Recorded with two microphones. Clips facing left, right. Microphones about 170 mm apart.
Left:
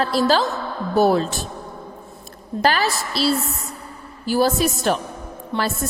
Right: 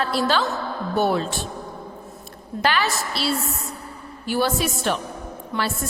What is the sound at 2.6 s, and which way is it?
A woman's voice, 40° left (ahead or behind).